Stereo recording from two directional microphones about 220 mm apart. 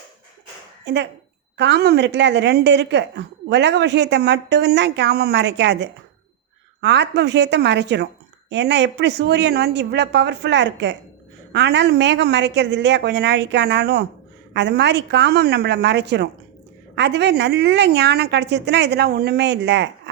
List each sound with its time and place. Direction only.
0.9 s a woman's voice: 50° right (ahead or behind)